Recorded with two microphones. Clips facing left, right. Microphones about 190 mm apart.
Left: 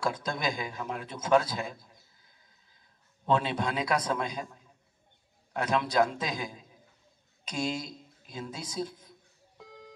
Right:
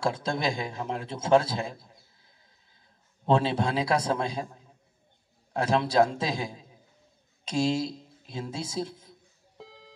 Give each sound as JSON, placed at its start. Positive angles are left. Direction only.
{"t": 0.0, "sound": "a man's voice", "side_deg": -25}
{"t": 9.6, "sound": "beep", "side_deg": -30}